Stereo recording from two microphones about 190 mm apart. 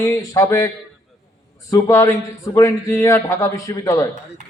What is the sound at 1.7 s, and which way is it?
A man's voice, 15° left (ahead or behind).